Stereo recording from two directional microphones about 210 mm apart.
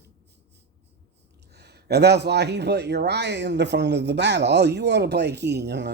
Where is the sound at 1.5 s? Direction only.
50° right (ahead or behind).